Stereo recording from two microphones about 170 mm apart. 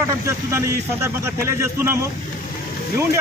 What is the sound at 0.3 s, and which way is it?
A man's voice, 15° right (ahead or behind).